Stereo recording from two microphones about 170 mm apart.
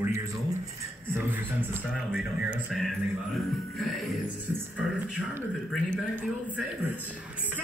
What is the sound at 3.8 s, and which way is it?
Music, centre (ahead or behind).